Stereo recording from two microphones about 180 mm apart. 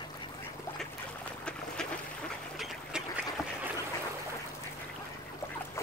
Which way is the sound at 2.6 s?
Centre (ahead or behind).